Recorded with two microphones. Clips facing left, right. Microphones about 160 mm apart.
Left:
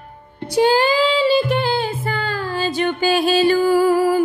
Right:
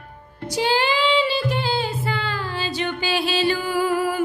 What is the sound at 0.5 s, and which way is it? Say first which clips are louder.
Female singing: left 6 dB; 45° left (ahead or behind).